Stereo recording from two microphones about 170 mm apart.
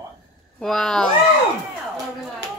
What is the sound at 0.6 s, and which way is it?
Speech, 5° left (ahead or behind).